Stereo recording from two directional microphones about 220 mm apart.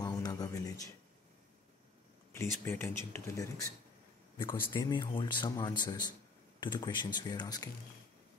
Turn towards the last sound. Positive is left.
turn(degrees=20)  # may be behind; listen again after turning